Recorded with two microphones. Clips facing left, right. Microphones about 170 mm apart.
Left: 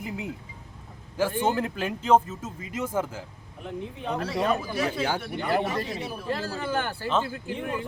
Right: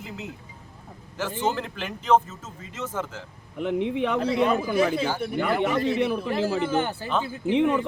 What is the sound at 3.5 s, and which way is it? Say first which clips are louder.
Speech: right 11 dB; 80° right.